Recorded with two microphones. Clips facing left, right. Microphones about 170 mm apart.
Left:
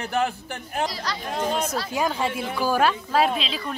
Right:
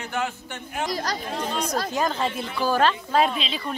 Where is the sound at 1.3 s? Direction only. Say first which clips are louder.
Left 5 dB; 50° left (ahead or behind).